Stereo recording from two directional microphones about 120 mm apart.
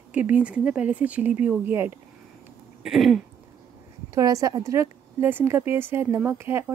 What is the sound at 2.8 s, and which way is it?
Throat clearing, centre (ahead or behind).